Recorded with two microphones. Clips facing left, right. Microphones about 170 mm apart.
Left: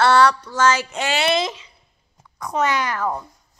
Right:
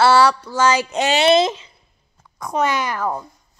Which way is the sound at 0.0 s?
5° right (ahead or behind).